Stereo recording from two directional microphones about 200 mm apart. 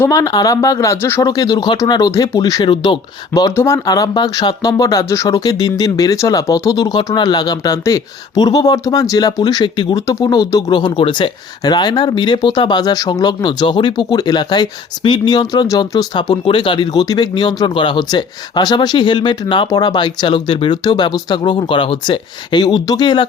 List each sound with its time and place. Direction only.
0.0 s speech: 15° left (ahead or behind)